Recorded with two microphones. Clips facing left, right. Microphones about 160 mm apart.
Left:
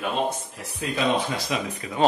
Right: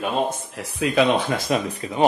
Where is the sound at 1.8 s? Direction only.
30° right (ahead or behind).